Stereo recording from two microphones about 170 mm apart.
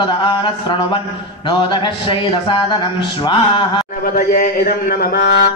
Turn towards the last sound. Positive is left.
turn(degrees=70)  # may be behind; listen again after turning